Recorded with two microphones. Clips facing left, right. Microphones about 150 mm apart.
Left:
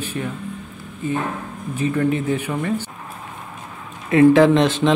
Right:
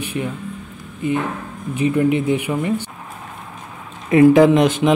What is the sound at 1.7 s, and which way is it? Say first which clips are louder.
Speech: right 3 dB; 15° right (ahead or behind).